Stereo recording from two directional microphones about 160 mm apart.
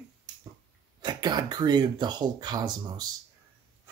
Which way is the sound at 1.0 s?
25° right (ahead or behind).